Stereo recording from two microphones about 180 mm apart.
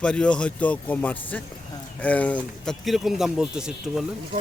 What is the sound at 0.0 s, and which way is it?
Speech, 5° left (ahead or behind).